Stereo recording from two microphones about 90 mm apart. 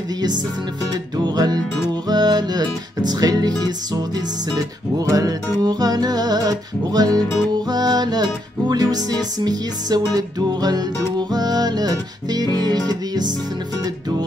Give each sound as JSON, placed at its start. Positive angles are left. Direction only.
{"t": 1.1, "sound": "music", "side_deg": -50}